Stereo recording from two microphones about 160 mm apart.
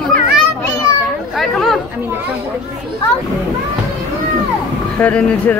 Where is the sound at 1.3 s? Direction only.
Centre (ahead or behind).